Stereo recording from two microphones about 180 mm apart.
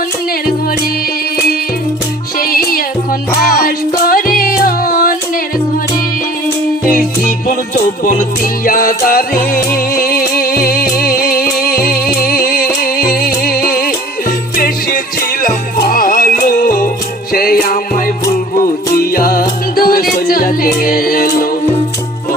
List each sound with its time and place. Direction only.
2.4 s music: 55° left (ahead or behind)
4.0 s music: 55° left (ahead or behind)
6.9 s music: 50° left (ahead or behind)
8.6 s music: 55° left (ahead or behind)